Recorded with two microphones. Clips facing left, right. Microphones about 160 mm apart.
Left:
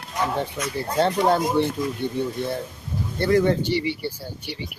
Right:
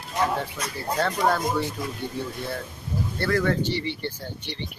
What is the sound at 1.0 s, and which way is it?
Speech, 25° left (ahead or behind).